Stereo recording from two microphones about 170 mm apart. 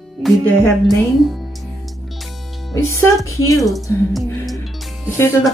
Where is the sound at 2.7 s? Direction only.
15° left (ahead or behind).